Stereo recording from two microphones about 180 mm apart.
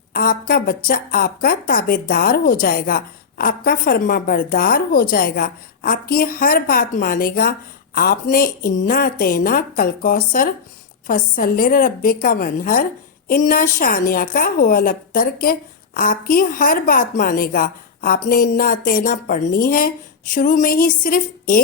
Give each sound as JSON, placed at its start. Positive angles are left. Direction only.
{"t": 0.1, "sound": "a woman's voice", "side_deg": 55}